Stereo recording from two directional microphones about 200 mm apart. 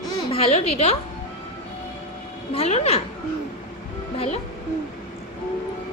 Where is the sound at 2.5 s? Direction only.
30° left (ahead or behind).